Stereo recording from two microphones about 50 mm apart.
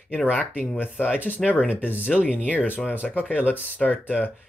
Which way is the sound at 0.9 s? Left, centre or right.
Left.